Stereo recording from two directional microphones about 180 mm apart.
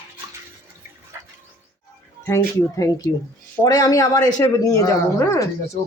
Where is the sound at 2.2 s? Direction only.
15° left (ahead or behind).